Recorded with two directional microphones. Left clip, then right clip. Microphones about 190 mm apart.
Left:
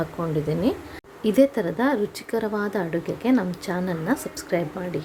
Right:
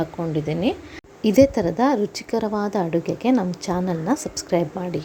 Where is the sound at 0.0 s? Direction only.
10° right (ahead or behind).